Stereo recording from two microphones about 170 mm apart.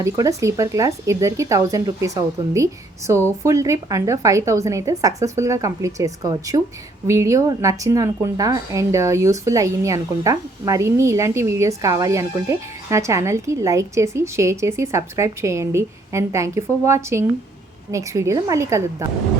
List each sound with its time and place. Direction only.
0.0 s a woman's voice: 20° right (ahead or behind)